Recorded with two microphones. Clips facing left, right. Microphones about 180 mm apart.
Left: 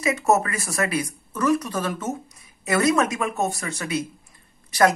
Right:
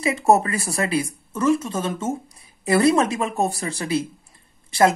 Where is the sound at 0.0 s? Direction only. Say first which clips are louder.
Right 3 dB; 30° right (ahead or behind).